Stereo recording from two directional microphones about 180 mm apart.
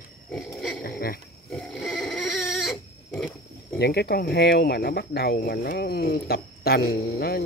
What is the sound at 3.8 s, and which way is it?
Speech, 65° left (ahead or behind).